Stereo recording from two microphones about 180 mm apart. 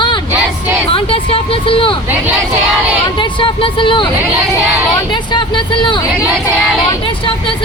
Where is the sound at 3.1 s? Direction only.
25° left (ahead or behind).